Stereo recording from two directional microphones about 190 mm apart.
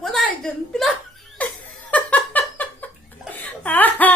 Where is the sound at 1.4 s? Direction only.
10° left (ahead or behind).